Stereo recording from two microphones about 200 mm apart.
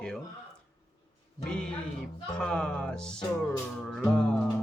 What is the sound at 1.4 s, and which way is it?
Music, 5° left (ahead or behind).